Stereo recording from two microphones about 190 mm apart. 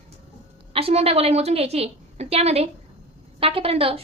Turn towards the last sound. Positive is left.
turn(degrees=-30)  # may be behind; listen again after turning